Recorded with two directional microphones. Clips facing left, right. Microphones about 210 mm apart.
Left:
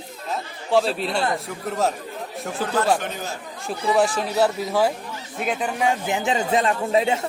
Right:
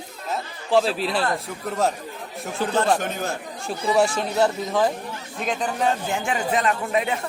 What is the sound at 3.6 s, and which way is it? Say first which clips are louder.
A man's voice: even; centre (ahead or behind).